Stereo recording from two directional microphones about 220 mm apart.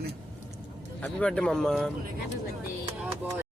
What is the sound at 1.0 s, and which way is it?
Speech, 5° left (ahead or behind).